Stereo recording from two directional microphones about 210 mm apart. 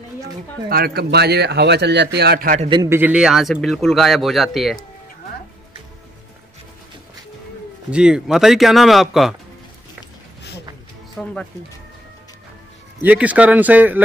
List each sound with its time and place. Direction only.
0.7 s speech: 45° right (ahead or behind)
2.7 s speech: 15° right (ahead or behind); by 4.8 s centre (ahead or behind)
7.9 s speech: 5° right (ahead or behind)
11.2 s speech: 5° left (ahead or behind)
13.0 s speech: 5° right (ahead or behind)